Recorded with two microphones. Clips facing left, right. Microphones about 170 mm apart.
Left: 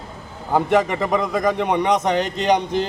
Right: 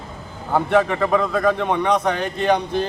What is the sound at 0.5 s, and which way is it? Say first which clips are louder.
A man's voice: even; 15° left (ahead or behind).